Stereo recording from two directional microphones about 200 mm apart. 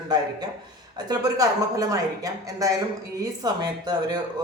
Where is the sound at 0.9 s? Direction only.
20° right (ahead or behind).